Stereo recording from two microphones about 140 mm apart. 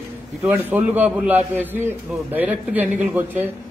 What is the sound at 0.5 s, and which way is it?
A man's voice, 15° right (ahead or behind).